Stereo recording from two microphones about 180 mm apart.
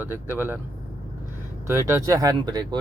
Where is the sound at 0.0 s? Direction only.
10° right (ahead or behind).